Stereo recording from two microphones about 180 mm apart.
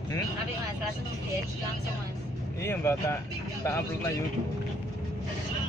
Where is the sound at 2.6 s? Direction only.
15° left (ahead or behind).